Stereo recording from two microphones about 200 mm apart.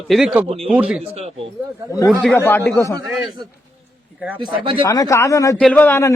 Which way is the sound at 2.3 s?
10° left (ahead or behind).